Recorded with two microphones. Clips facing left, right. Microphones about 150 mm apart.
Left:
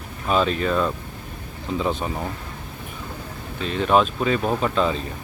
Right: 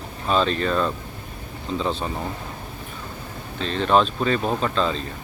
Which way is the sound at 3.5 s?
10° left (ahead or behind).